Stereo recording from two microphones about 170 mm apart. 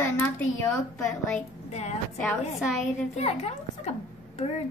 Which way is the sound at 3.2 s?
40° left (ahead or behind).